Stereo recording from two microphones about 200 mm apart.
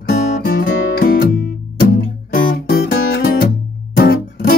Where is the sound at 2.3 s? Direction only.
50° left (ahead or behind).